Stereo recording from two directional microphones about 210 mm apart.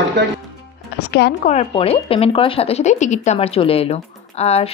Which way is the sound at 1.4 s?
30° left (ahead or behind).